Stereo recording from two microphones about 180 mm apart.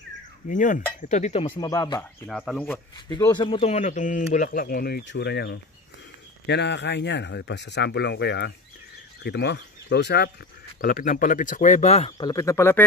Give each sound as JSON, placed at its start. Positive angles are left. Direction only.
{"t": 0.5, "sound": "cutlery", "side_deg": 45}
{"t": 1.5, "sound": "speech", "side_deg": 20}
{"t": 2.2, "sound": "speech", "side_deg": 5}
{"t": 3.3, "sound": "speech", "side_deg": 30}
{"t": 10.8, "sound": "speech", "side_deg": 50}
{"t": 12.2, "sound": "speech", "side_deg": 20}